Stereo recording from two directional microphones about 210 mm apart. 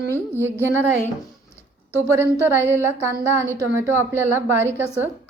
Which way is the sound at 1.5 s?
10° left (ahead or behind).